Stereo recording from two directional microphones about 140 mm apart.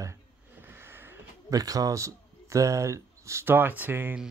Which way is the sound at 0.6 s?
15° right (ahead or behind).